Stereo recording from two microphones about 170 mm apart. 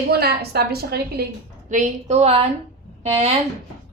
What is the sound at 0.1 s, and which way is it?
A woman's voice, 70° right (ahead or behind).